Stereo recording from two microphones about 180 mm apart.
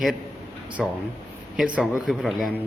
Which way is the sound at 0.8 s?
Centre (ahead or behind).